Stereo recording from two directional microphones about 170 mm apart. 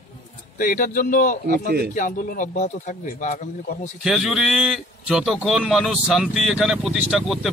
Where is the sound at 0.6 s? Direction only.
50° left (ahead or behind).